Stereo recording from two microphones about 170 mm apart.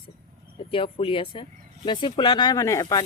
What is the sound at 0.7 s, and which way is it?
Speech, 30° left (ahead or behind).